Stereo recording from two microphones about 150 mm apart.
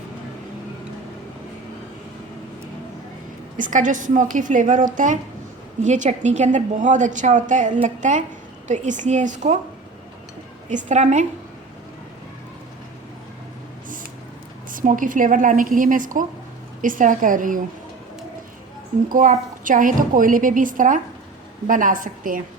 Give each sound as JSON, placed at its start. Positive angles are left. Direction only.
{"t": 3.6, "sound": "a woman's voice", "side_deg": -60}
{"t": 10.7, "sound": "a woman's voice", "side_deg": -55}
{"t": 14.7, "sound": "a woman's voice", "side_deg": -65}
{"t": 19.0, "sound": "a woman's voice", "side_deg": -60}